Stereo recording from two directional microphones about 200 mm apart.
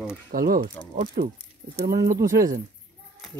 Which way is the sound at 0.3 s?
45° right (ahead or behind).